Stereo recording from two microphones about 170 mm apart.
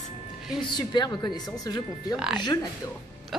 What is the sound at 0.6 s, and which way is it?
Speech, 25° left (ahead or behind).